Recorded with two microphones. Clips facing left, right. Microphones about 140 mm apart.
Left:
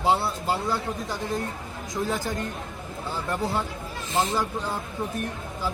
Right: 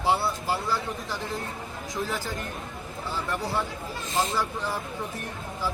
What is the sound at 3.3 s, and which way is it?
Speech, 20° left (ahead or behind).